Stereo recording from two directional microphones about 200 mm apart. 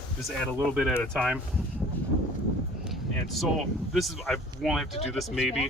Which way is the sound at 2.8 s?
Centre (ahead or behind).